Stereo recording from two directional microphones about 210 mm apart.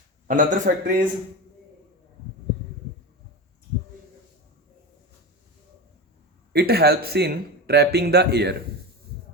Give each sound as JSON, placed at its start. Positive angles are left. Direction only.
{"t": 0.3, "sound": "speech", "side_deg": -40}
{"t": 6.5, "sound": "speech", "side_deg": -50}